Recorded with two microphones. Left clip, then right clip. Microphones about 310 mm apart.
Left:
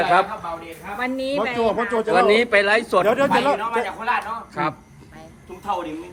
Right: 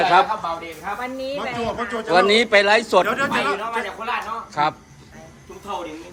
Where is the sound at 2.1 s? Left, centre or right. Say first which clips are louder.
Right 2 dB; centre.